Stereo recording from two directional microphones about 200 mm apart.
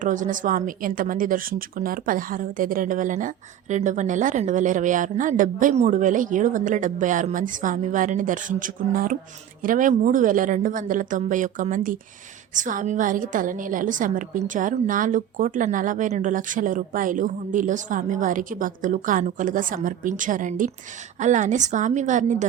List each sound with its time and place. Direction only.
0.0 s a woman's voice: 40° right (ahead or behind)